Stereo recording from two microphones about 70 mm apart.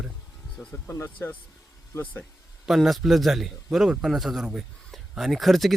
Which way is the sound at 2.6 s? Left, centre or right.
Centre.